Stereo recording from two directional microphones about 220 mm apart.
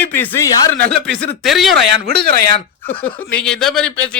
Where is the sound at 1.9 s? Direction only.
45° right (ahead or behind).